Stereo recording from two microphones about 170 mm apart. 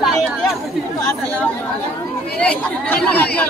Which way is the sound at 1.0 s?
10° left (ahead or behind).